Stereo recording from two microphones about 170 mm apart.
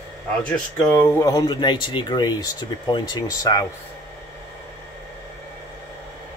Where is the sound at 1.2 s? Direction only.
25° left (ahead or behind).